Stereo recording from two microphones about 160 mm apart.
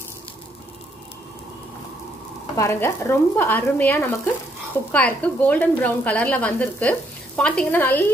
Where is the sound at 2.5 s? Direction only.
20° left (ahead or behind).